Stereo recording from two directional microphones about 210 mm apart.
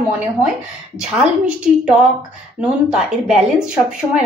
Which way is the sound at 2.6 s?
5° right (ahead or behind).